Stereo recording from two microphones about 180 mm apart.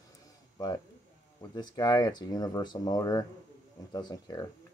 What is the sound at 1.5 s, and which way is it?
Speech, 25° left (ahead or behind).